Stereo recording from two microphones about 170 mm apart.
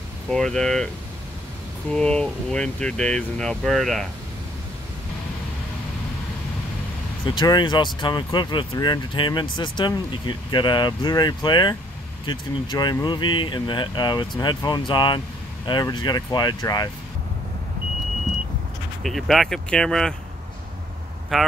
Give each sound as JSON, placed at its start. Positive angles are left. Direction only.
{"t": 0.3, "sound": "speech", "side_deg": 5}
{"t": 1.9, "sound": "speech", "side_deg": 5}
{"t": 7.2, "sound": "speech", "side_deg": 25}
{"t": 19.0, "sound": "speech", "side_deg": 0}
{"t": 21.3, "sound": "speech", "side_deg": 0}